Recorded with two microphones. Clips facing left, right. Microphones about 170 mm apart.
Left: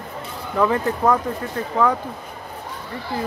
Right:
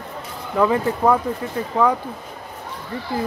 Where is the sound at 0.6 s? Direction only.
10° right (ahead or behind).